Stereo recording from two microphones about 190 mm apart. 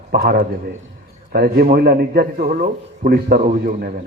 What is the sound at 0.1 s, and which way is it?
A man's voice, 55° right (ahead or behind).